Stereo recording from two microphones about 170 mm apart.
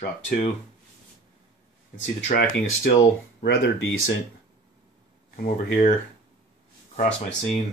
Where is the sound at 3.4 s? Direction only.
90° left.